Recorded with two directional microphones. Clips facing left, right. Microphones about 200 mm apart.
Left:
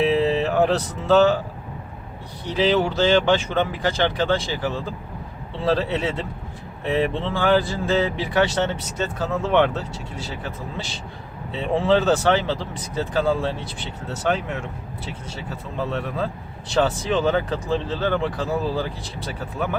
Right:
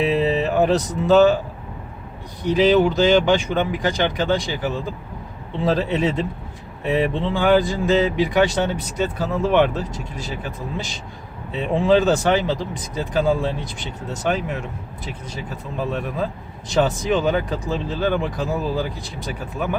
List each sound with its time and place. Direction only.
0.2 s music: 15° right (ahead or behind)
2.4 s speech: 15° right (ahead or behind)
5.9 s speech: 15° right (ahead or behind)
11.5 s speech: 15° right (ahead or behind)